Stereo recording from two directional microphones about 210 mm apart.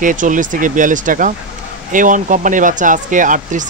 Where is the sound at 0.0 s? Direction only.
40° right (ahead or behind).